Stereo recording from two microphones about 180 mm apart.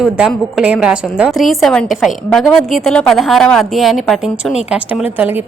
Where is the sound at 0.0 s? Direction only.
Centre (ahead or behind).